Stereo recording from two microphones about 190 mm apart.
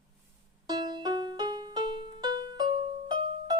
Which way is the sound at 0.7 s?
20° right (ahead or behind).